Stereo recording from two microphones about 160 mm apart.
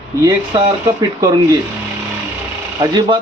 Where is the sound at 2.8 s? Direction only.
30° right (ahead or behind).